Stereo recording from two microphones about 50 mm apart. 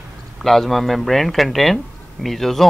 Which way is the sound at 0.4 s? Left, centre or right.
Centre.